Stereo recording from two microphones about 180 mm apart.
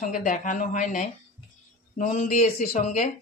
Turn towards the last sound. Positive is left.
turn(degrees=40)  # may be behind; listen again after turning